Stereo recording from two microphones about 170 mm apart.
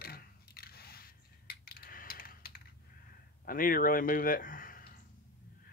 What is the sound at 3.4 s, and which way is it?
Speech, 55° left (ahead or behind).